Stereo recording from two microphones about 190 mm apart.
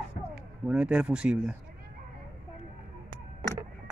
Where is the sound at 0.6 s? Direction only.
5° right (ahead or behind).